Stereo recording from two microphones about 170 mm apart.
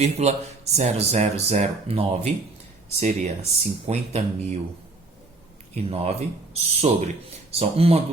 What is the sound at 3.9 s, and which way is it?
Speech, 40° right (ahead or behind).